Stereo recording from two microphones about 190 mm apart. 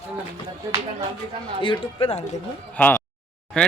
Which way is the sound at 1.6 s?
25° left (ahead or behind).